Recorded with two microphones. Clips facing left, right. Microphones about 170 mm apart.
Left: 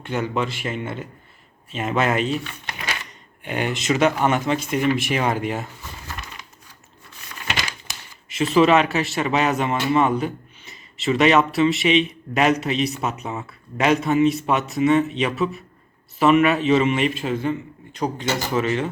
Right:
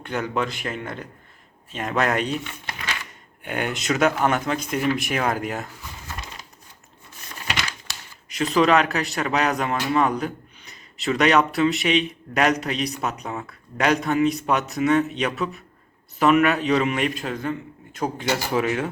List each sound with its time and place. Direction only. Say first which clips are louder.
0.0 s a man's voice: left 1 dB; centre (ahead or behind)
8.3 s a man's voice: left 2 dB; centre (ahead or behind)